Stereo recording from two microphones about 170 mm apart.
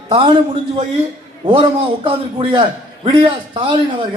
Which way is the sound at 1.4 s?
30° right (ahead or behind).